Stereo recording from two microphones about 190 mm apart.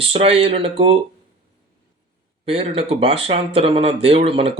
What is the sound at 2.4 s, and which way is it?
Speech, 30° right (ahead or behind).